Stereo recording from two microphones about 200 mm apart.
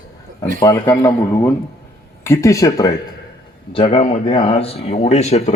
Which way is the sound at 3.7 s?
30° left (ahead or behind).